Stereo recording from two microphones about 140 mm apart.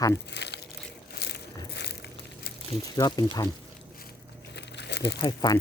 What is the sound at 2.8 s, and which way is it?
Speech, 25° left (ahead or behind).